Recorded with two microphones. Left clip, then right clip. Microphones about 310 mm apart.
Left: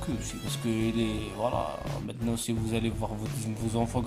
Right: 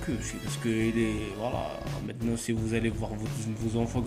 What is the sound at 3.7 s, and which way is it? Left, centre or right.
Speech, left.